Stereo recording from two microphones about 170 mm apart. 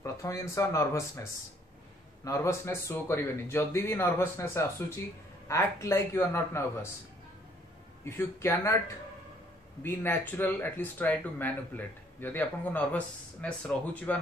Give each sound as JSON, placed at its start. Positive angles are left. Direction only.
{"t": 0.0, "sound": "speech", "side_deg": 20}
{"t": 2.2, "sound": "speech", "side_deg": 15}
{"t": 8.0, "sound": "speech", "side_deg": 15}
{"t": 9.8, "sound": "speech", "side_deg": 15}